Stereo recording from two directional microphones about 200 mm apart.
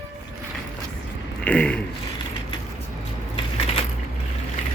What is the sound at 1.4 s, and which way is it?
Speech, 5° left (ahead or behind).